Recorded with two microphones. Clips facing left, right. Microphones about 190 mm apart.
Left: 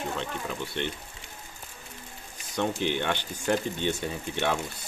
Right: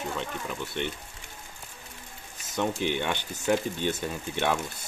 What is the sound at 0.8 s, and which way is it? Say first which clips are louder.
Speech: even; 10° right (ahead or behind).